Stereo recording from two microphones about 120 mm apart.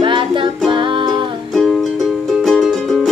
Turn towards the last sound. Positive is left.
turn(degrees=0)  # may be behind; listen again after turning